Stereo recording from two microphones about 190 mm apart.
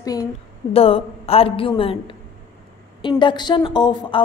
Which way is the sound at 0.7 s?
30° left (ahead or behind).